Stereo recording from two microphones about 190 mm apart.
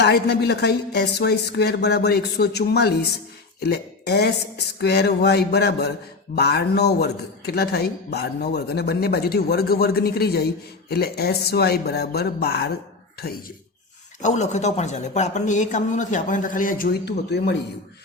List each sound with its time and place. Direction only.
0.0 s a man's voice: 60° left (ahead or behind)
14.2 s speech: 40° left (ahead or behind); by 17.6 s 60° left (ahead or behind)